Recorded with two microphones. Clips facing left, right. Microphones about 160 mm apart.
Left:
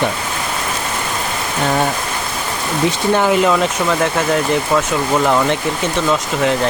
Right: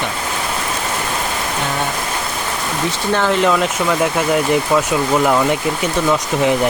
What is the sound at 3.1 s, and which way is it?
Speech, 10° left (ahead or behind).